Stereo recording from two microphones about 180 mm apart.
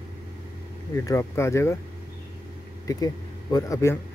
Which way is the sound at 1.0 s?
15° left (ahead or behind).